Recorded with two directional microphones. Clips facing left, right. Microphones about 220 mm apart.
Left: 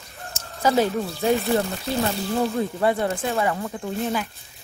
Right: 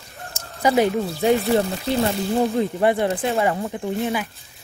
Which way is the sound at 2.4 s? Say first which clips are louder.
Right 3 dB; 15° right (ahead or behind).